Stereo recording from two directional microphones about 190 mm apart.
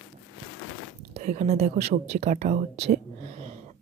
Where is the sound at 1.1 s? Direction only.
40° right (ahead or behind).